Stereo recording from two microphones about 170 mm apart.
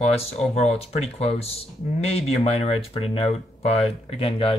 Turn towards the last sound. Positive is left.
turn(degrees=35)  # may be behind; listen again after turning